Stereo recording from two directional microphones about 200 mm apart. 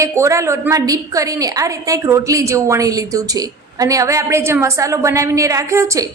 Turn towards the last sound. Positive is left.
turn(degrees=-15)  # may be behind; listen again after turning